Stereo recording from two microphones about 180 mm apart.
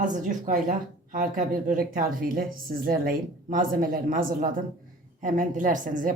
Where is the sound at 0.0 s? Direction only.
45° right (ahead or behind).